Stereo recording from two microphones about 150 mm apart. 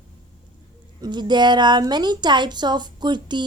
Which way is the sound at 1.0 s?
30° right (ahead or behind).